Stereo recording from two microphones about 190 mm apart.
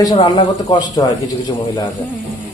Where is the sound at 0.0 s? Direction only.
20° left (ahead or behind).